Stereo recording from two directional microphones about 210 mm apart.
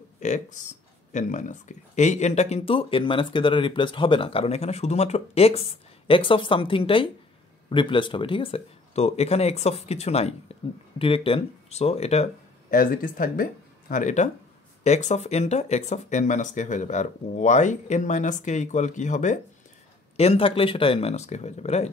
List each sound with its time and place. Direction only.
0.2 s speech: 35° left (ahead or behind)
12.7 s speech: 40° left (ahead or behind)